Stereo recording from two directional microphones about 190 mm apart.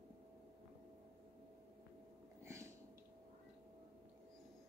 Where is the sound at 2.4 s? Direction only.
15° right (ahead or behind).